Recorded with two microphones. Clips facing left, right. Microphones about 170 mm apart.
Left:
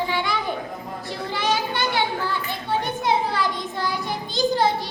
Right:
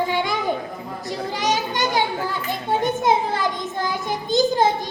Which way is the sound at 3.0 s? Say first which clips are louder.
Right 2 dB; 45° right (ahead or behind).